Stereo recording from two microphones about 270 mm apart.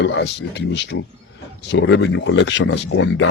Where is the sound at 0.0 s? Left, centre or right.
Left.